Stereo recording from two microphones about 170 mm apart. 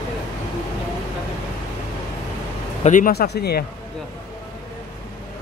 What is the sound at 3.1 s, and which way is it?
Speech, 70° left (ahead or behind).